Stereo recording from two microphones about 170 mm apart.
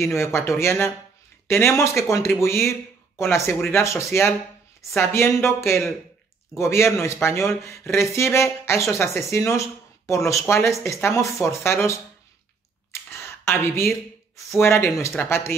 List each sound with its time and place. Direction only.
0.0 s speech: 15° left (ahead or behind)
12.9 s a sound: 15° left (ahead or behind)
14.6 s speech: 15° left (ahead or behind)